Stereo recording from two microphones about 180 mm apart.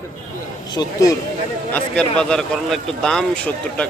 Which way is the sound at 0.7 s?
20° left (ahead or behind).